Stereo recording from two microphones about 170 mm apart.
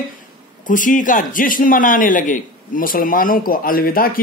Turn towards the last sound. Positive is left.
turn(degrees=60)  # may be behind; listen again after turning